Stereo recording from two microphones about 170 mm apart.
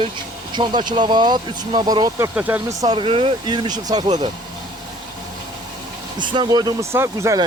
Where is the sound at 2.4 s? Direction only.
10° right (ahead or behind).